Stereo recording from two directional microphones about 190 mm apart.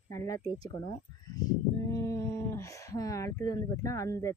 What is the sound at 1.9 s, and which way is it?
Speech, 15° left (ahead or behind).